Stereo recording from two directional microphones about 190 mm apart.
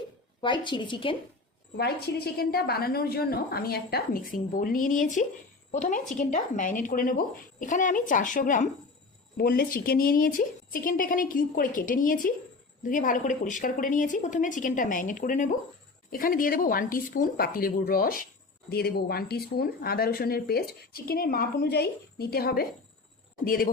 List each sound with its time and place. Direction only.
0.4 s a woman's voice: 25° left (ahead or behind)
1.7 s speech: 55° left (ahead or behind)